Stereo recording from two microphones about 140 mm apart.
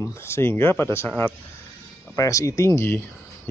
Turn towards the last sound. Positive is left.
turn(degrees=15)  # may be behind; listen again after turning